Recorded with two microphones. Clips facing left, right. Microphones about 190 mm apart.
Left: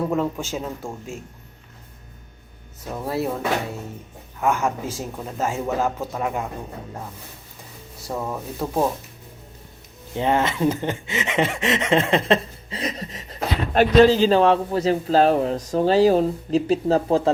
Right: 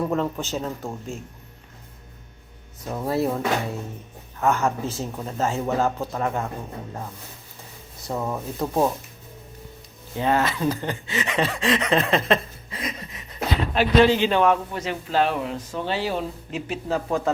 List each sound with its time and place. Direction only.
0.0 s speech: 5° left (ahead or behind)
2.9 s speech: centre (ahead or behind)
4.4 s speech: 10° left (ahead or behind)
8.0 s speech: centre (ahead or behind)
10.2 s a man's voice: 20° left (ahead or behind)